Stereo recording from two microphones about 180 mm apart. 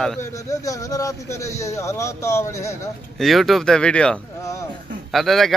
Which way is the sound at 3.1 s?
Centre (ahead or behind).